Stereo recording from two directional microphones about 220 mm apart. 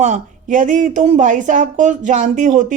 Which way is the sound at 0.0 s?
35° right (ahead or behind).